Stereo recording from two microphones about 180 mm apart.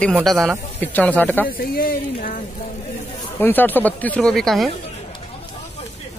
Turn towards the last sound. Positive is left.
turn(degrees=0)  # may be behind; listen again after turning